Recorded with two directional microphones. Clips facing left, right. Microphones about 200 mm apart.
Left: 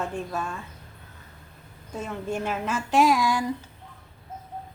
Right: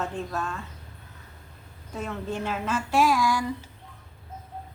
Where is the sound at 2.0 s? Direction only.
10° left (ahead or behind).